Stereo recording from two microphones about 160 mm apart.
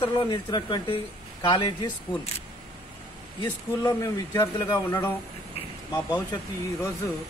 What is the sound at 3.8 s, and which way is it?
Speech, 20° left (ahead or behind).